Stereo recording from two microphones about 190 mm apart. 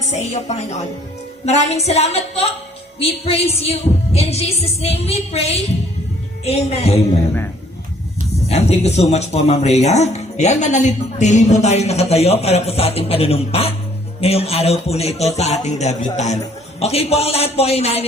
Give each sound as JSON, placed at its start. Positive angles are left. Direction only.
{"t": 0.0, "sound": "speech", "side_deg": 35}
{"t": 8.4, "sound": "speech", "side_deg": 35}